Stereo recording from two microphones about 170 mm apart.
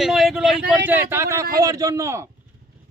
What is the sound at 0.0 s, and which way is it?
A man's voice, centre (ahead or behind).